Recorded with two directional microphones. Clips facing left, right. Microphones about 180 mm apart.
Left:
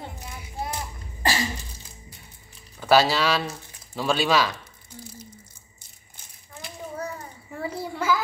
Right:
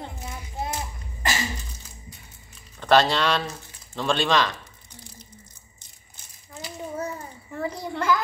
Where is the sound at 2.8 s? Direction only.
5° left (ahead or behind).